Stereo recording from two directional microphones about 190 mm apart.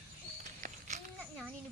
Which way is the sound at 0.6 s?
40° right (ahead or behind).